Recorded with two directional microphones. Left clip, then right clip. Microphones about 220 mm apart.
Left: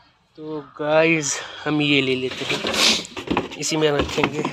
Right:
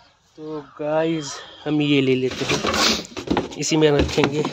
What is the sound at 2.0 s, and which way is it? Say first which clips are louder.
Speech: right 2 dB; 40° right (ahead or behind).